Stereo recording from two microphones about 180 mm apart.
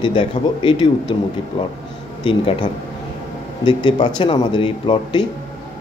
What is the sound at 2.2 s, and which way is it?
A man's voice, 30° left (ahead or behind).